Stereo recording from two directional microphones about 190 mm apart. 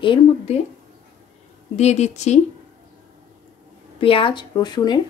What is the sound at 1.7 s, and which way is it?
Speech, 35° left (ahead or behind).